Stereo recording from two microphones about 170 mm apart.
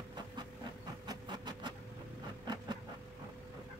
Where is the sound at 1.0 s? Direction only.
25° right (ahead or behind).